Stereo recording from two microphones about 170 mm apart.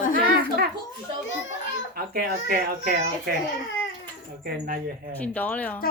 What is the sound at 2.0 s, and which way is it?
Speech, 60° right (ahead or behind).